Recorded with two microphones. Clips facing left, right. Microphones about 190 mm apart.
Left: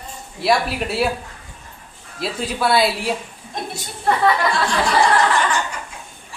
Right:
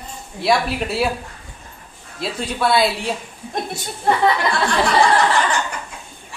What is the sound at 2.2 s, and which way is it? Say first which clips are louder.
Speech: even; centre (ahead or behind).